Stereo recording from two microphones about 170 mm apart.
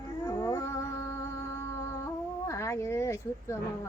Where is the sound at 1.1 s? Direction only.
15° left (ahead or behind).